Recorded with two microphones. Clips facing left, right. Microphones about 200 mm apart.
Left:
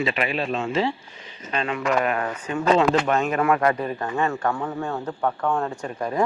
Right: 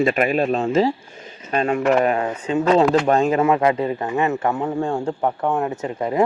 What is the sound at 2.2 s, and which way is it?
Speech, 20° right (ahead or behind).